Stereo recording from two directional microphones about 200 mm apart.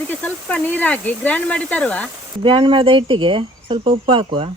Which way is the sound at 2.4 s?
25° right (ahead or behind).